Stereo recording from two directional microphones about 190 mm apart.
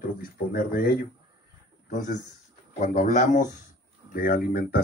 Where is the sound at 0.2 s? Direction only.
50° left (ahead or behind).